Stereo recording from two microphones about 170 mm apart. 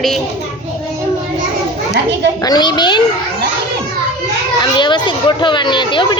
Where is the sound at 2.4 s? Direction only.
25° left (ahead or behind).